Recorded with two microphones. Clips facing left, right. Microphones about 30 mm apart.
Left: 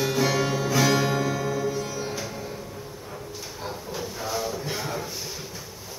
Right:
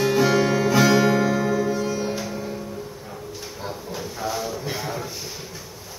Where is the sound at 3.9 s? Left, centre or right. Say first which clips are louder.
Right 2 dB; centre.